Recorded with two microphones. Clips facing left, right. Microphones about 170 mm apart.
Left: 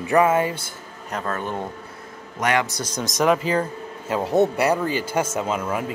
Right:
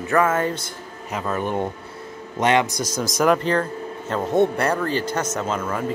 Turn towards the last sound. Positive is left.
turn(degrees=10)  # may be behind; listen again after turning